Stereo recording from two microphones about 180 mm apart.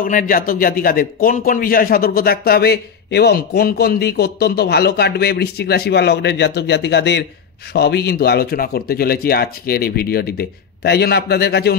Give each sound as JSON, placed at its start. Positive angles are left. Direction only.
{"t": 0.0, "sound": "a man's voice", "side_deg": 50}